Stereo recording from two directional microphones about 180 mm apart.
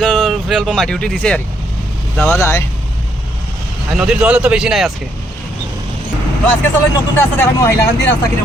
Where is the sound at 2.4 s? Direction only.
15° left (ahead or behind).